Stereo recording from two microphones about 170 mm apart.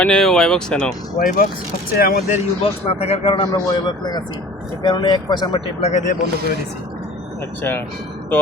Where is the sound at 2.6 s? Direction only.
35° left (ahead or behind).